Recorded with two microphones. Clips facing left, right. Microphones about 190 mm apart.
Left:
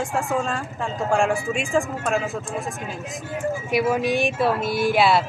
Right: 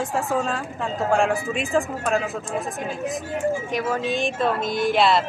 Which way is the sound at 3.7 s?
10° left (ahead or behind).